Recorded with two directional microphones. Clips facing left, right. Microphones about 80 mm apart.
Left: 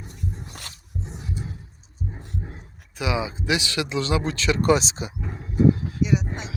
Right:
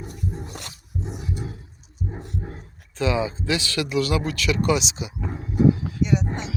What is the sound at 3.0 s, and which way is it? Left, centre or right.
Speech, centre.